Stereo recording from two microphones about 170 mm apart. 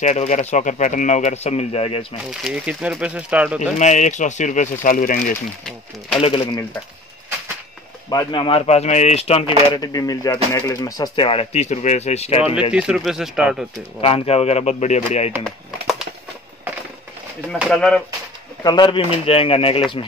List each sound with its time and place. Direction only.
0.0 s speech: 45° left (ahead or behind)
2.4 s speech: 5° right (ahead or behind)
3.7 s speech: 45° left (ahead or behind)
6.1 s speech: 30° left (ahead or behind)
8.1 s speech: 25° left (ahead or behind)
9.7 s speech: 20° left (ahead or behind)
11.2 s speech: 35° left (ahead or behind)
12.7 s speech: 5° right (ahead or behind)
14.0 s speech: 35° left (ahead or behind)
17.5 s speech: centre (ahead or behind)
18.6 s speech: 25° left (ahead or behind)